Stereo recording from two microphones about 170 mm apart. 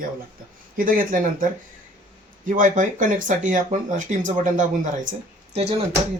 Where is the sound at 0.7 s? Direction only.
50° right (ahead or behind).